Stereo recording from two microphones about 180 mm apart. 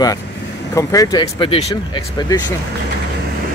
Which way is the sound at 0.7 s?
20° left (ahead or behind).